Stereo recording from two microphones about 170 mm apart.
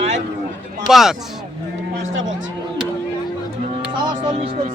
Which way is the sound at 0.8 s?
Centre (ahead or behind).